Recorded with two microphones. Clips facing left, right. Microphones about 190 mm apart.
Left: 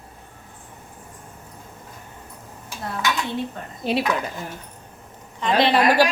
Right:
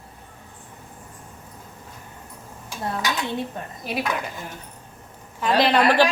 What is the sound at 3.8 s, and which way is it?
Speech, 25° left (ahead or behind).